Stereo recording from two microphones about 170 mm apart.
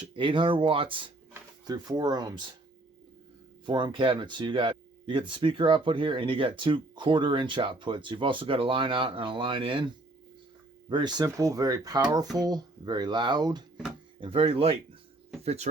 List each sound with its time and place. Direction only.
0.2 s speech: 30° right (ahead or behind)
3.7 s speech: 25° right (ahead or behind)